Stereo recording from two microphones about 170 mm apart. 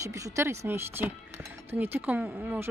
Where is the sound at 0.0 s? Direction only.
20° right (ahead or behind).